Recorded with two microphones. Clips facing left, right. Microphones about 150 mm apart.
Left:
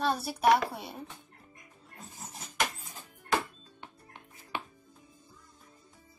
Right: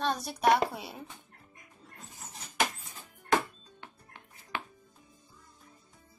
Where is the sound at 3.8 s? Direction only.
15° left (ahead or behind).